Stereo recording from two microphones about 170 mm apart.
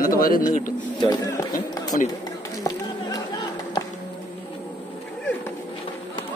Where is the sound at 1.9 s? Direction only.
50° left (ahead or behind).